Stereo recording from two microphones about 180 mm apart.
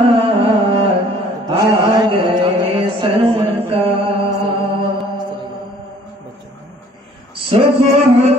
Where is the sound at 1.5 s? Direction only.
25° right (ahead or behind).